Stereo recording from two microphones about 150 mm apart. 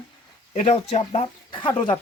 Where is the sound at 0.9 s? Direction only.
45° left (ahead or behind).